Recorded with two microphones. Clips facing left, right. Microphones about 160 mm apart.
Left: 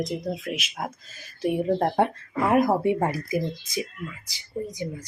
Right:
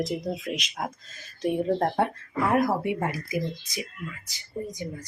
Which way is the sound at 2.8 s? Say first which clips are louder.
Left 5 dB; 35° left (ahead or behind).